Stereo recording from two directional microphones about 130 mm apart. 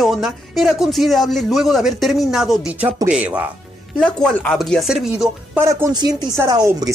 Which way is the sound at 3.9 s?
5° left (ahead or behind).